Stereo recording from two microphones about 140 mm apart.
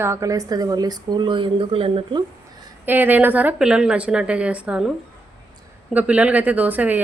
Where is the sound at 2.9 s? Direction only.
15° right (ahead or behind).